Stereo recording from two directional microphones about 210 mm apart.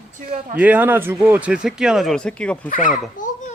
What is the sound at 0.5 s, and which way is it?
Speech, 5° right (ahead or behind).